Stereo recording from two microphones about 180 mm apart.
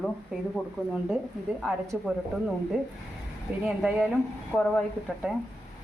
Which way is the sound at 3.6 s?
Centre (ahead or behind).